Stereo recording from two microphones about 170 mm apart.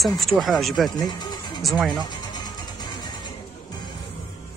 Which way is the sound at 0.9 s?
25° left (ahead or behind).